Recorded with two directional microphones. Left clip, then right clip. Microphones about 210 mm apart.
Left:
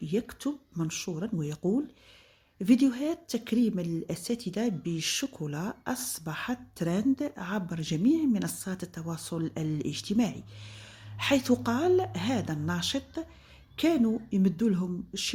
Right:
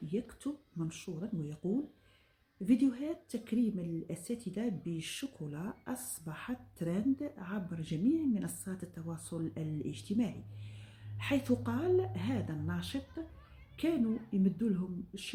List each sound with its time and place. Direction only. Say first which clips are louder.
0.1 s a woman's voice: left 7 dB; 35° left (ahead or behind)
2.6 s a woman's voice: left 6 dB; 40° left (ahead or behind)